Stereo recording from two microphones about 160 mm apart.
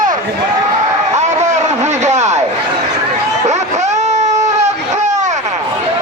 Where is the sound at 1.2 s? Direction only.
45° right (ahead or behind).